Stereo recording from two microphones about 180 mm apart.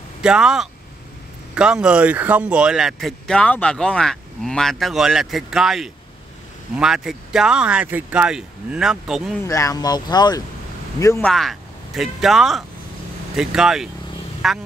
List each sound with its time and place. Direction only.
0.2 s speech: 5° right (ahead or behind)
9.5 s speech: 20° left (ahead or behind)
11.2 s speech: centre (ahead or behind)